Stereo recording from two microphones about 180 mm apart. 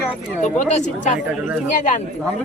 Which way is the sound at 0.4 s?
40° left (ahead or behind).